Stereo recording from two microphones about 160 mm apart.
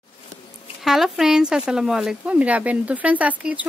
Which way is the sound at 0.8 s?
Centre (ahead or behind).